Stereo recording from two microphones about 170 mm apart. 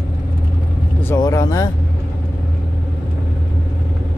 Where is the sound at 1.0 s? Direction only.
15° left (ahead or behind).